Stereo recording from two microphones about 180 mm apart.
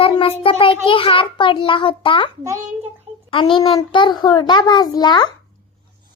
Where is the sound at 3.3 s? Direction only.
25° left (ahead or behind).